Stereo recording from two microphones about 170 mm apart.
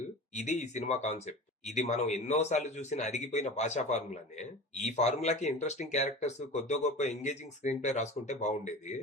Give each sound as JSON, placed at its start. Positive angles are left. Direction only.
{"t": 0.3, "sound": "speech", "side_deg": 45}